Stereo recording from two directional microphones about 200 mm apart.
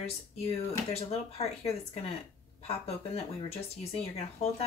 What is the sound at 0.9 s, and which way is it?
Speech, 30° left (ahead or behind).